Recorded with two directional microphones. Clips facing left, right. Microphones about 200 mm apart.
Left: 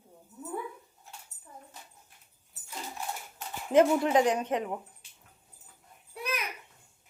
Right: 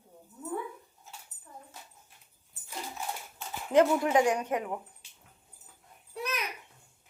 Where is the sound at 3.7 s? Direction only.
20° left (ahead or behind).